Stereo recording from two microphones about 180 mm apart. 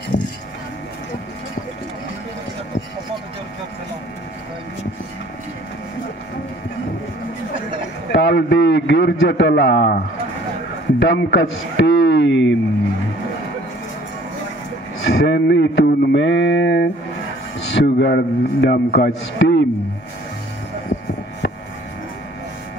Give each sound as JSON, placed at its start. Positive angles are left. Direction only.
{"t": 0.1, "sound": "a sound", "side_deg": 45}
{"t": 8.1, "sound": "a man's voice", "side_deg": 80}
{"t": 11.0, "sound": "a man's voice", "side_deg": 75}
{"t": 15.0, "sound": "a man's voice", "side_deg": 70}